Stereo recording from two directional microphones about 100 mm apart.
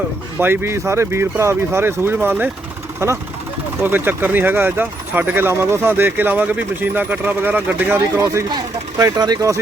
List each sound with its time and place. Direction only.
0.3 s speech: 20° right (ahead or behind)
3.0 s speech: 25° right (ahead or behind)
8.2 s speech: 30° right (ahead or behind)
9.0 s speech: 40° right (ahead or behind)